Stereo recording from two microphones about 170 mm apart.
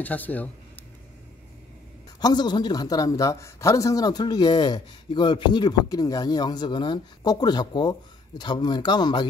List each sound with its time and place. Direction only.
0.0 s speech: 10° left (ahead or behind)
2.1 s a man's voice: 25° left (ahead or behind)